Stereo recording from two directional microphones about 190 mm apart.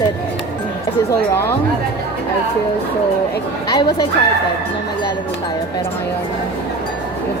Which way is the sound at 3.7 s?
20° left (ahead or behind).